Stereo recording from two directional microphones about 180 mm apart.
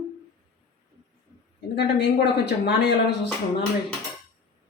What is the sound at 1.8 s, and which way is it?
Speech, 65° left (ahead or behind).